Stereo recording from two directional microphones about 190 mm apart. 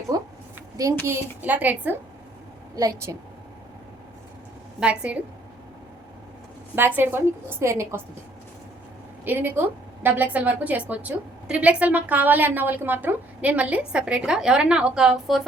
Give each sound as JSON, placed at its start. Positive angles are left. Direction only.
{"t": 0.8, "sound": "a woman's voice", "side_deg": -15}
{"t": 4.8, "sound": "a woman's voice", "side_deg": -5}
{"t": 6.7, "sound": "a woman's voice", "side_deg": -10}
{"t": 9.2, "sound": "a woman's voice", "side_deg": -10}